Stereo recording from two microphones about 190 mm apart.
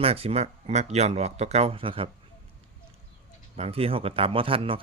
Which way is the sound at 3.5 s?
30° right (ahead or behind).